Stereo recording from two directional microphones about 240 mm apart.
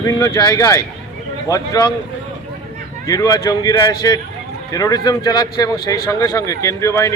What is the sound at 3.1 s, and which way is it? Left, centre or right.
Speech, centre.